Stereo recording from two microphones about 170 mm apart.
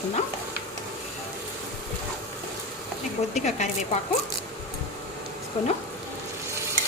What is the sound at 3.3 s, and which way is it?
Speech, 40° left (ahead or behind).